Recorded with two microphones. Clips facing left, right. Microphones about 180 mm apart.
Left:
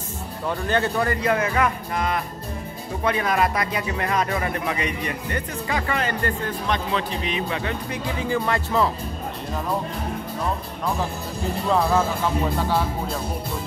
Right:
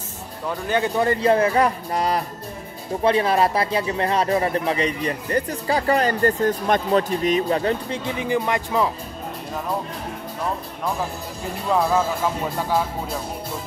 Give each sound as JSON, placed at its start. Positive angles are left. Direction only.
{"t": 0.5, "sound": "speech", "side_deg": -10}
{"t": 1.0, "sound": "speech", "side_deg": -30}
{"t": 7.9, "sound": "speech", "side_deg": -20}
{"t": 11.7, "sound": "speech", "side_deg": -5}